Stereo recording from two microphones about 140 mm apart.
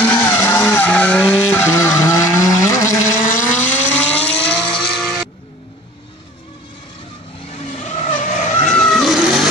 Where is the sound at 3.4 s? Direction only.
60° left (ahead or behind).